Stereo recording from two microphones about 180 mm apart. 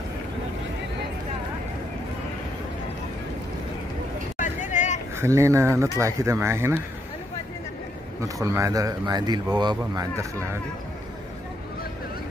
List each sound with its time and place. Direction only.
4.4 s vehicle: 45° left (ahead or behind)
5.1 s speech: 15° right (ahead or behind)
8.2 s a man's voice: 15° right (ahead or behind)